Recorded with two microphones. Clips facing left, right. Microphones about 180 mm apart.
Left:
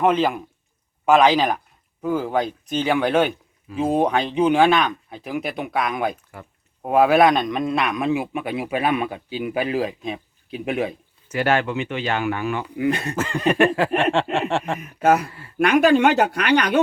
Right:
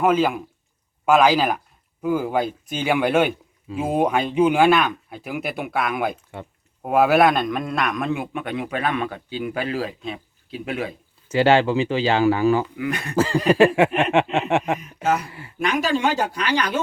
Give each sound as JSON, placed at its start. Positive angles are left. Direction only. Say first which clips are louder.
{"t": 0.0, "sound": "a man's voice", "louder": "even", "side_deg": -5}
{"t": 11.3, "sound": "speech", "louder": "right 4 dB", "side_deg": -30}
{"t": 12.7, "sound": "speech", "louder": "left 5 dB", "side_deg": 25}
{"t": 13.1, "sound": "speech", "louder": "right 5 dB", "side_deg": -35}
{"t": 13.7, "sound": "a sound", "louder": "right 2 dB", "side_deg": -20}
{"t": 14.8, "sound": "speech", "louder": "left 5 dB", "side_deg": 55}